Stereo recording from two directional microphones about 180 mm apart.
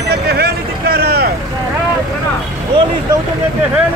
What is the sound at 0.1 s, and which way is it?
Vehicle, 60° right (ahead or behind).